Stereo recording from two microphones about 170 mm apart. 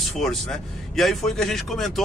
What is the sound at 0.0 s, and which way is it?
Speech, centre (ahead or behind).